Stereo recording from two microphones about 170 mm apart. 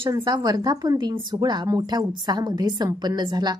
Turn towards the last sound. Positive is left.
turn(degrees=-25)  # may be behind; listen again after turning